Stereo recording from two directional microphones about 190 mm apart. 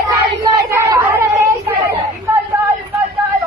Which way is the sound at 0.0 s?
20° right (ahead or behind).